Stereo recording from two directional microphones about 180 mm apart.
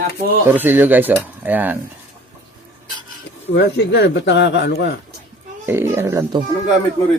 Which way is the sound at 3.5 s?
70° left (ahead or behind).